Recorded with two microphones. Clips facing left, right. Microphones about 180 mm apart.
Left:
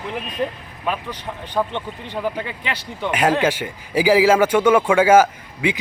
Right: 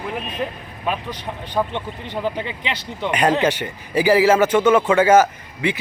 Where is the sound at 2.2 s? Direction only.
20° right (ahead or behind).